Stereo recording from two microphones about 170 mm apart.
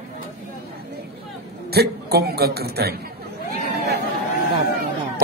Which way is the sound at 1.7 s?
70° right (ahead or behind).